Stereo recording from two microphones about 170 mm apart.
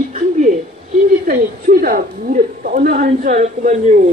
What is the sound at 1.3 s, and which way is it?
A woman's voice, 55° right (ahead or behind).